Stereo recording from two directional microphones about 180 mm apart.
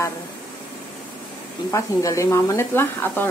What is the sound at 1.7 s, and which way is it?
Speech, 15° left (ahead or behind).